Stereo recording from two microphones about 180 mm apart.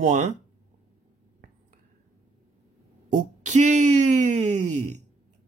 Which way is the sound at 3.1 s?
45° right (ahead or behind).